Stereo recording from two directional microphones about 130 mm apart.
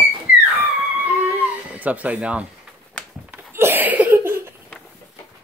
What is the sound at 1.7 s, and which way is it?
Speech, 10° right (ahead or behind).